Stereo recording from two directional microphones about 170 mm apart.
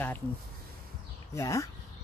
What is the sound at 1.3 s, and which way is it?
Speech, 20° left (ahead or behind).